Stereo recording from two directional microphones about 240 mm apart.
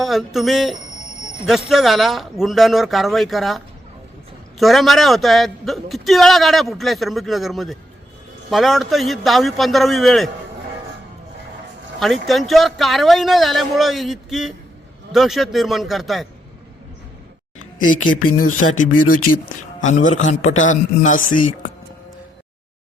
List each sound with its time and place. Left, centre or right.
0.0 s a man's voice: centre
4.6 s a man's voice: centre
11.9 s a man's voice: centre
17.7 s speech: left
18.2 s speech: left
18.8 s a man's voice: left